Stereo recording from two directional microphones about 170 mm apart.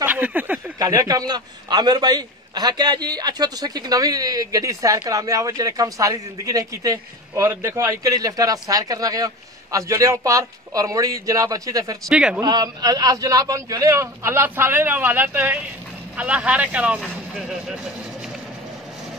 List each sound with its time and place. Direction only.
0.0 s a sound: 10° right (ahead or behind)
0.7 s a man's voice: 20° right (ahead or behind)
12.1 s a man's voice: 5° right (ahead or behind)
12.4 s a man's voice: 25° right (ahead or behind); by 17.7 s 5° right (ahead or behind)